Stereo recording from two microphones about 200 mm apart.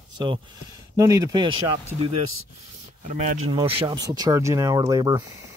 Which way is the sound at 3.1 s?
35° right (ahead or behind).